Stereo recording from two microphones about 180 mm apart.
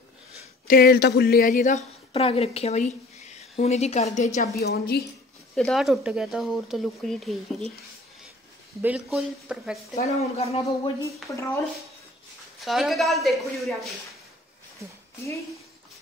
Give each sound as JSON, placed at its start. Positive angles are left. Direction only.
{"t": 0.7, "sound": "a woman's voice", "side_deg": 60}
{"t": 4.6, "sound": "a woman's voice", "side_deg": 60}
{"t": 5.6, "sound": "speech", "side_deg": 0}
{"t": 8.8, "sound": "speech", "side_deg": -5}
{"t": 10.0, "sound": "speech", "side_deg": 35}
{"t": 11.2, "sound": "speech", "side_deg": 15}
{"t": 12.5, "sound": "speech", "side_deg": 0}